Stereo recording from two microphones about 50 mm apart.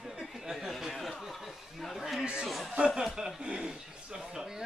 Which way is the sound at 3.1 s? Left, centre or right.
Centre.